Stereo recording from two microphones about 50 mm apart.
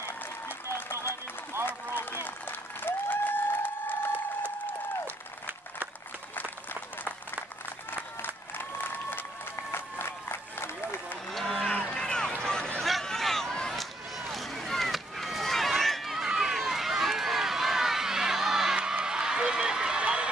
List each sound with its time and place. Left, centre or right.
0.0 s applause: left
1.7 s run: left
2.8 s applause: left
5.0 s applause: right
8.5 s applause: left
9.7 s run: left
11.2 s a sound: centre
11.5 s run: centre
12.4 s a sound: centre
13.7 s run: centre; by 20.2 s right